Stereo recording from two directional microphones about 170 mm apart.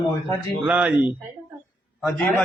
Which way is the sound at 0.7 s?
5° right (ahead or behind).